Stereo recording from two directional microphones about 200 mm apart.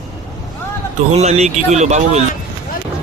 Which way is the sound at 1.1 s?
35° right (ahead or behind).